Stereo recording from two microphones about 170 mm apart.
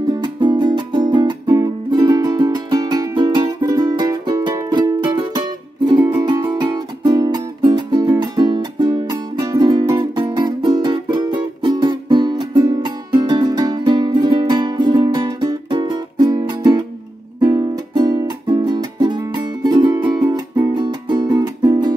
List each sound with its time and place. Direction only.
0.0 s music: 25° right (ahead or behind)